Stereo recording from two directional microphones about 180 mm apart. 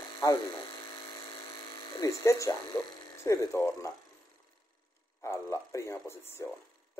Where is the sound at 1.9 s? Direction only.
15° left (ahead or behind).